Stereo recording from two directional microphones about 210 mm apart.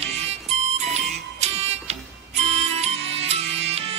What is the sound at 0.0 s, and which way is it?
Music, 30° right (ahead or behind).